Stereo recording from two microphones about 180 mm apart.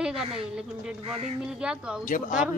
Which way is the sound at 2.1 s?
45° left (ahead or behind).